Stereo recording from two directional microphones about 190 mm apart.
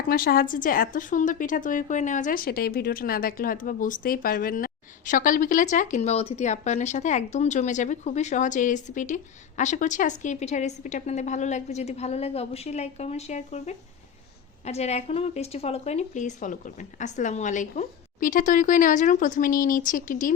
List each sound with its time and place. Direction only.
0.1 s a woman's voice: 50° left (ahead or behind)